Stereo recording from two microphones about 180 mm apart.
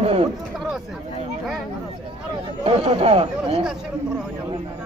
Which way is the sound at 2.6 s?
35° right (ahead or behind).